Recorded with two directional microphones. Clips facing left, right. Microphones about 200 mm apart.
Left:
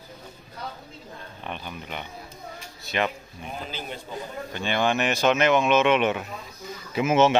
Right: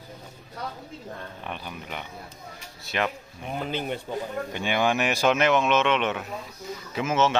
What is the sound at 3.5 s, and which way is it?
Speech, 60° right (ahead or behind).